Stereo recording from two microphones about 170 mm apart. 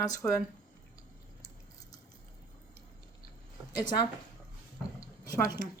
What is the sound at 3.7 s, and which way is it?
Speech, 25° left (ahead or behind).